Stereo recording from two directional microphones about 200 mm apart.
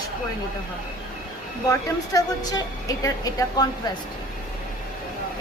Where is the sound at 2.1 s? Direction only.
20° left (ahead or behind).